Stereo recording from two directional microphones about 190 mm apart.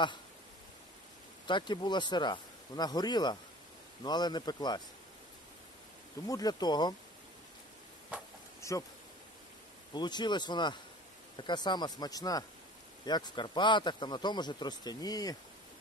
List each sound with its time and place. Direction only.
1.5 s a man's voice: 25° left (ahead or behind)
6.2 s a man's voice: 20° left (ahead or behind)
8.5 s a sound: 15° left (ahead or behind)
9.9 s a man's voice: 25° left (ahead or behind)